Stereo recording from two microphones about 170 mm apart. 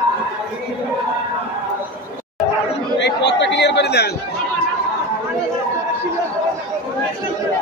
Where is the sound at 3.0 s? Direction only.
90° left.